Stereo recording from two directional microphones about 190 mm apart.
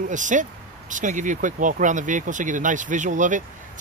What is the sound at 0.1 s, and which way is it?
Speech, 40° right (ahead or behind).